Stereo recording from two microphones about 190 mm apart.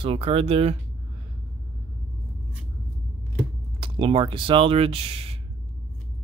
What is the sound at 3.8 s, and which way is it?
Speech, 30° right (ahead or behind).